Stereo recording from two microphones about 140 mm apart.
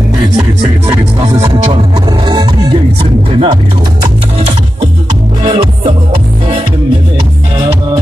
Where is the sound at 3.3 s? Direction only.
40° right (ahead or behind).